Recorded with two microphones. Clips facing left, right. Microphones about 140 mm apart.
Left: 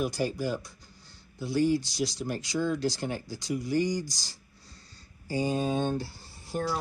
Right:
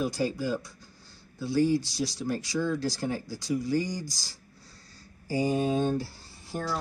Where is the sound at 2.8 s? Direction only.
20° left (ahead or behind).